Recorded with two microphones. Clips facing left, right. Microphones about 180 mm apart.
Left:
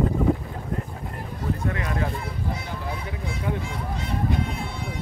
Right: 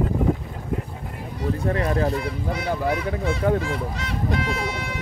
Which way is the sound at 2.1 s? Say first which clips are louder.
Right 5 dB; 75° right (ahead or behind).